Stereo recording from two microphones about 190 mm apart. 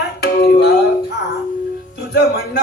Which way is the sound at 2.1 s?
65° left (ahead or behind).